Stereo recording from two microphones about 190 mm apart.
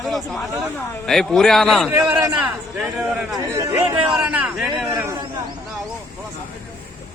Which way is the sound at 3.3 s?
15° right (ahead or behind).